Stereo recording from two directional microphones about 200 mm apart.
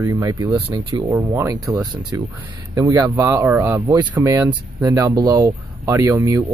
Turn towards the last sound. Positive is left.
turn(degrees=-15)  # may be behind; listen again after turning